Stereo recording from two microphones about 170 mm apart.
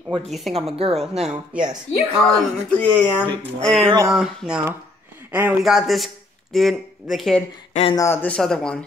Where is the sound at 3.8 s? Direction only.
20° right (ahead or behind).